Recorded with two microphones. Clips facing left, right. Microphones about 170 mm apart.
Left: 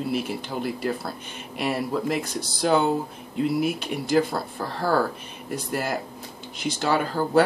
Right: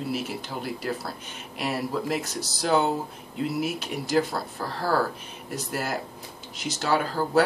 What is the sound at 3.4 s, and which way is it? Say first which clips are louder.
Speech: left 4 dB; centre (ahead or behind).